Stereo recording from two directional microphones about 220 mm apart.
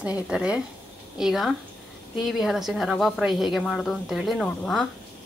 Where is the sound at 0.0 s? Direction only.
5° right (ahead or behind).